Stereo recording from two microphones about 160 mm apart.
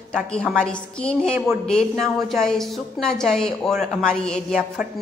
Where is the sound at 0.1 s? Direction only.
5° left (ahead or behind).